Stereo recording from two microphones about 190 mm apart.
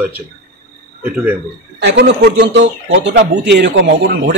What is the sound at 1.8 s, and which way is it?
Speech, 65° right (ahead or behind).